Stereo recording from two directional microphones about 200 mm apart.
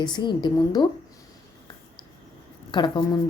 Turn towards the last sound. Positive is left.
turn(degrees=20)  # may be behind; listen again after turning